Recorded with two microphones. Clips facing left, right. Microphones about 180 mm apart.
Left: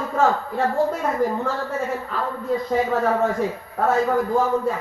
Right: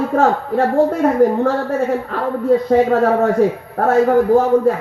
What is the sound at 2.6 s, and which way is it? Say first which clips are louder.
Speech: right 6 dB; 70° right (ahead or behind).